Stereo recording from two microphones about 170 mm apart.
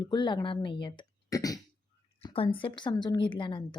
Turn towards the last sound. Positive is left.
turn(degrees=30)  # may be behind; listen again after turning